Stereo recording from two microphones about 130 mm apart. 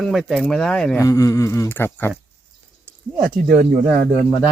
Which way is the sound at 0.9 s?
25° left (ahead or behind).